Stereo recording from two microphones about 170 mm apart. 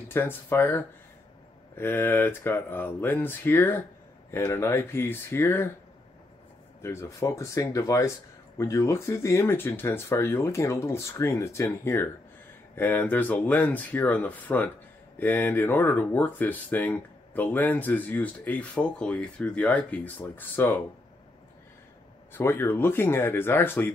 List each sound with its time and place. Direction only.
0.1 s speech: 15° left (ahead or behind)
6.8 s speech: 15° left (ahead or behind)
22.3 s speech: 15° left (ahead or behind)